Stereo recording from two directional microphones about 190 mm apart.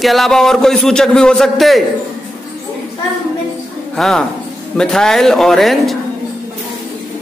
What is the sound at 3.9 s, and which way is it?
A man's voice, centre (ahead or behind).